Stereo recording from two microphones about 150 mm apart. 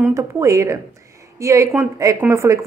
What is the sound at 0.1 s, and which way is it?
A woman's voice, 20° right (ahead or behind).